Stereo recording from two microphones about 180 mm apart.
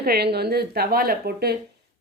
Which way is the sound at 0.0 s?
60° right (ahead or behind).